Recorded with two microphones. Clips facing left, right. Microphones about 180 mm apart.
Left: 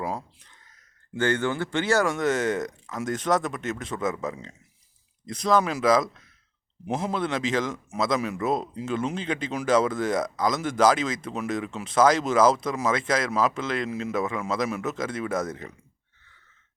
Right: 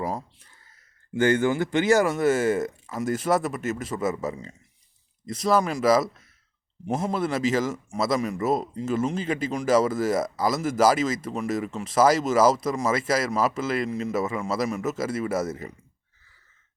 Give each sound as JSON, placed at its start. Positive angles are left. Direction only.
{"t": 0.0, "sound": "speech", "side_deg": -5}